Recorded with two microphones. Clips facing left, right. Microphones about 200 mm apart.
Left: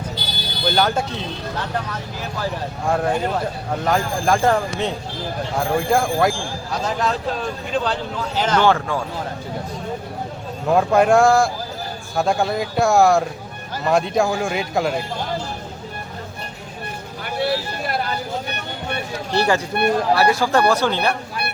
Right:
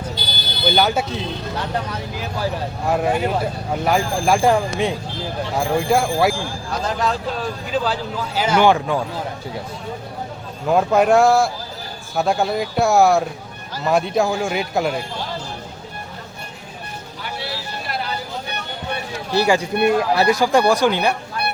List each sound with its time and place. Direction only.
0.6 s speech: 5° right (ahead or behind)
2.4 s speech: 5° right (ahead or behind)
8.4 s speech: 10° right (ahead or behind)
10.7 s speech: centre (ahead or behind)
17.2 s vehicle: 55° left (ahead or behind)
19.3 s speech: 10° right (ahead or behind)